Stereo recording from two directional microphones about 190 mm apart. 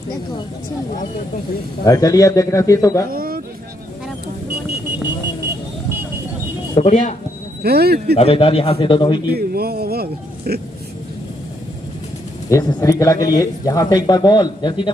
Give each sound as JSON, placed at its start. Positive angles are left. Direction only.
{"t": 1.9, "sound": "speech", "side_deg": 20}
{"t": 3.1, "sound": "a sound", "side_deg": -50}
{"t": 6.7, "sound": "speech", "side_deg": 35}
{"t": 7.6, "sound": "speech", "side_deg": -55}
{"t": 8.2, "sound": "speech", "side_deg": 30}
{"t": 9.3, "sound": "speech", "side_deg": -55}
{"t": 12.4, "sound": "speech", "side_deg": 15}